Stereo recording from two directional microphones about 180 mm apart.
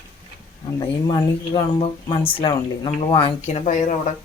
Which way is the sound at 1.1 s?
25° left (ahead or behind).